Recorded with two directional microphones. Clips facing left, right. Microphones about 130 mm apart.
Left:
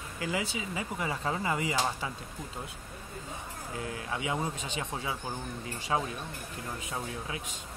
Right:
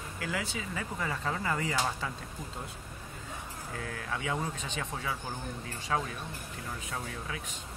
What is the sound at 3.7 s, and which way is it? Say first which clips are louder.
Speech: left 2 dB; 15° left (ahead or behind).